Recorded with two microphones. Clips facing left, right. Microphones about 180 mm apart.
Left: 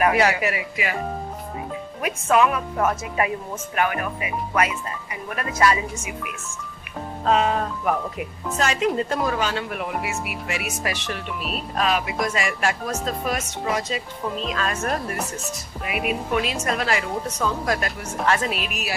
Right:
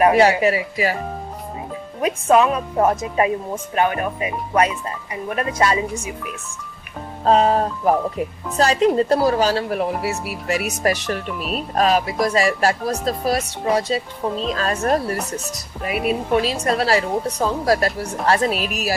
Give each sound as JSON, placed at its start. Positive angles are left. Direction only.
{"t": 0.0, "sound": "speech", "side_deg": -30}
{"t": 2.0, "sound": "speech", "side_deg": -30}
{"t": 7.3, "sound": "speech", "side_deg": -35}